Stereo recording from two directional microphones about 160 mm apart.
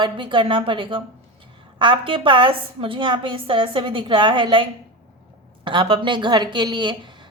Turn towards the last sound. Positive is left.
turn(degrees=-30)  # may be behind; listen again after turning